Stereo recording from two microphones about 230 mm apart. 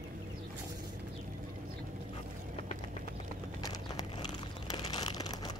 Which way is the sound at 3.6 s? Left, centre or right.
Centre.